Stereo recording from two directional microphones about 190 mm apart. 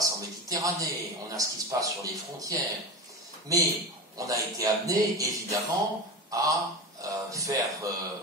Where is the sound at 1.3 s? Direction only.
15° right (ahead or behind).